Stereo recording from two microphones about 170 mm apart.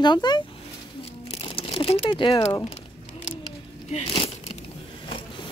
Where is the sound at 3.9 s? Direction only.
35° left (ahead or behind).